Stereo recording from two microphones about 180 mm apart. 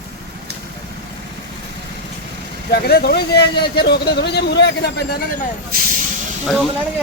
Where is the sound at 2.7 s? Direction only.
60° left (ahead or behind).